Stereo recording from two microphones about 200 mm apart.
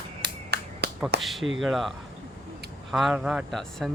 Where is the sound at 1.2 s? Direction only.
Centre (ahead or behind).